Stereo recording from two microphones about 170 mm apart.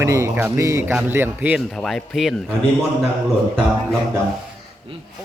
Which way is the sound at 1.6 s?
Centre (ahead or behind).